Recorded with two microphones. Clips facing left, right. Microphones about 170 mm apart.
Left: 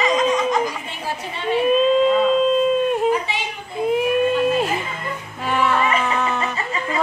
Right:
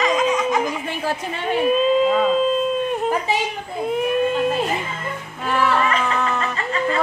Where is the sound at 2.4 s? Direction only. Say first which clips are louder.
Left 3 dB; centre (ahead or behind).